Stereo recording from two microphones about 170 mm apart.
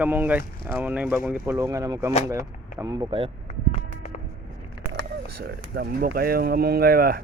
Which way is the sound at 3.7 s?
45° left (ahead or behind).